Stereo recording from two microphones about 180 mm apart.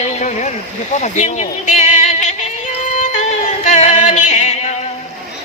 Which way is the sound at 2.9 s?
40° left (ahead or behind).